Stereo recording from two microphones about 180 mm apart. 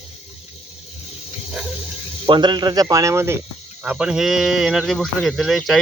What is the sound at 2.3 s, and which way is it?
Speech, 25° right (ahead or behind).